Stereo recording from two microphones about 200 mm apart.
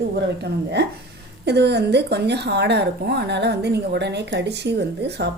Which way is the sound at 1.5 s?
55° right (ahead or behind).